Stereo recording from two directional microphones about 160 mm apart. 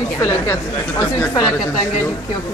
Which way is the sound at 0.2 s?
20° left (ahead or behind).